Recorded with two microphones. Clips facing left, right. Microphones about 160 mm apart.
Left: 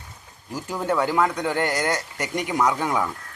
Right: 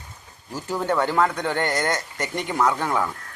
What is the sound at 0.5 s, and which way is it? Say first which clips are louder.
A man's voice: right 1 dB; 10° left (ahead or behind).